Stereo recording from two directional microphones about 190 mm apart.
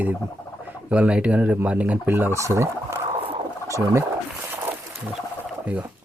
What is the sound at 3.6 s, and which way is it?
Speech, 15° right (ahead or behind).